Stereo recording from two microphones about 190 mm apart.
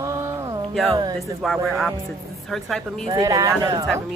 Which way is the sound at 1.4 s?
Centre (ahead or behind).